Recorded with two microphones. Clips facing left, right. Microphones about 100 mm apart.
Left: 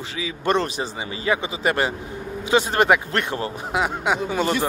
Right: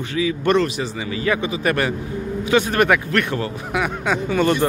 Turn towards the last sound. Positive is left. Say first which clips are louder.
# right 3 dB
turn(degrees=15)  # may be behind; listen again after turning